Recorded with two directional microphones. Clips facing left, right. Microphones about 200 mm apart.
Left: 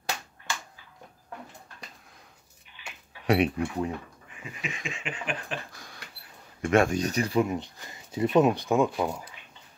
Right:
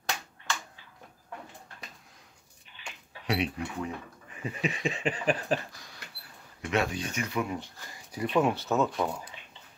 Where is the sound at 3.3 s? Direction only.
55° left (ahead or behind).